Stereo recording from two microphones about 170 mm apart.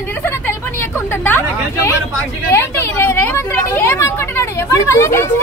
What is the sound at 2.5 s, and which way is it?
A woman's voice, 15° left (ahead or behind).